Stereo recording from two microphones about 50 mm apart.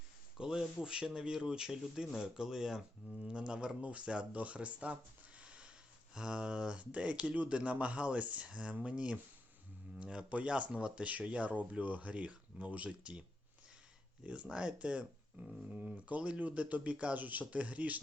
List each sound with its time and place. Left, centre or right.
0.3 s speech: centre
5.4 s a sound: right
6.1 s speech: centre
14.5 s speech: right